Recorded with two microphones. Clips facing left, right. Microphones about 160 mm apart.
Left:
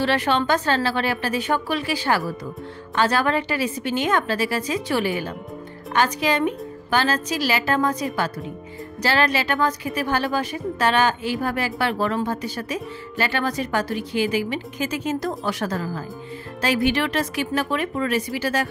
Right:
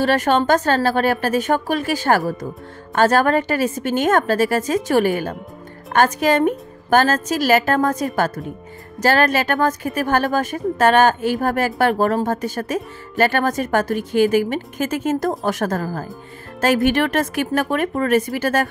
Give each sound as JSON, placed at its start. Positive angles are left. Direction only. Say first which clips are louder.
{"t": 0.0, "sound": "a woman's voice", "louder": "right 4 dB", "side_deg": -45}